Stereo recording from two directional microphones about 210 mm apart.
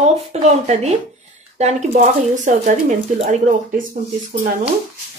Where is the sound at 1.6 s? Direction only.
35° right (ahead or behind).